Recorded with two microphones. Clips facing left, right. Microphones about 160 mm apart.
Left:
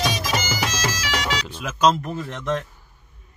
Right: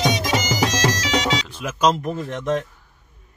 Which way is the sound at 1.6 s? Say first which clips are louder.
Left 1 dB; 10° right (ahead or behind).